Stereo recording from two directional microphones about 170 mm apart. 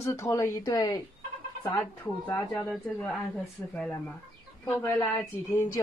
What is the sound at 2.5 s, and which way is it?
A woman's voice, 5° left (ahead or behind).